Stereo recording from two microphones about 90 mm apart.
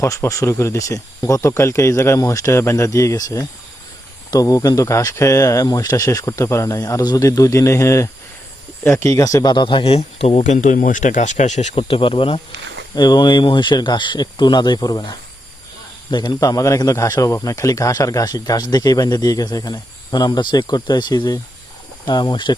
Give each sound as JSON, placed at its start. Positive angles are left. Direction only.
{"t": 0.0, "sound": "speech", "side_deg": 35}
{"t": 8.8, "sound": "speech", "side_deg": 20}
{"t": 9.0, "sound": "speech", "side_deg": 40}
{"t": 9.6, "sound": "a man's voice", "side_deg": 80}
{"t": 11.7, "sound": "speech", "side_deg": 90}
{"t": 13.0, "sound": "speech", "side_deg": 50}
{"t": 16.1, "sound": "speech", "side_deg": 45}